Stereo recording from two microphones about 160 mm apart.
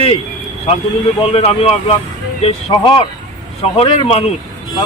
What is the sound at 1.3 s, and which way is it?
A man's voice, 40° left (ahead or behind).